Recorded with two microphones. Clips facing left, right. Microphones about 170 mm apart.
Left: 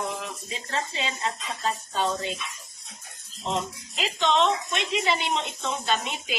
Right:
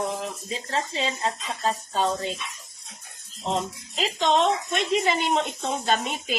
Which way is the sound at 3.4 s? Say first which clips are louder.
Right 2 dB; 40° right (ahead or behind).